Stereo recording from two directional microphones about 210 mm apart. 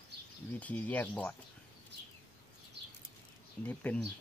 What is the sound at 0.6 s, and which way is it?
Speech, 5° left (ahead or behind).